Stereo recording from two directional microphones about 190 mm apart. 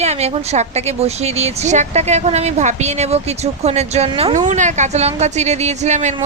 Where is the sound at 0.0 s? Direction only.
35° right (ahead or behind).